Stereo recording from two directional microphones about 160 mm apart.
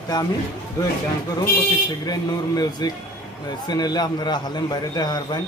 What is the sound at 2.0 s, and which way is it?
A man's voice, 25° left (ahead or behind).